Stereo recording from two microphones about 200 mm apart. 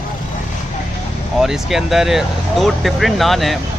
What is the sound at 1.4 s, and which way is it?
Speech, centre (ahead or behind).